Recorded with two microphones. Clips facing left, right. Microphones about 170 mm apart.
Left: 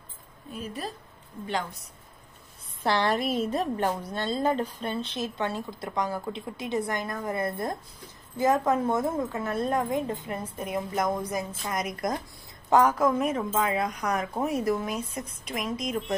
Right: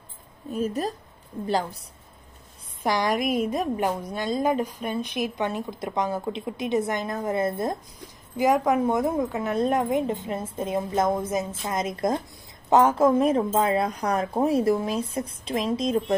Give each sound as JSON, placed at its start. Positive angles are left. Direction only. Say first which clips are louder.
{"t": 0.5, "sound": "speech", "louder": "right 9 dB", "side_deg": -45}
{"t": 1.5, "sound": "a woman's voice", "louder": "right 5 dB", "side_deg": -35}
{"t": 2.8, "sound": "a woman's voice", "louder": "right 1 dB", "side_deg": -15}